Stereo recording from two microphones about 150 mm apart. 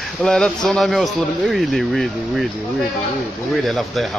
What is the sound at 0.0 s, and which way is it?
Speech, centre (ahead or behind).